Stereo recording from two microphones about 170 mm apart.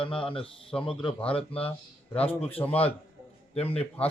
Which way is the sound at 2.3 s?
10° left (ahead or behind).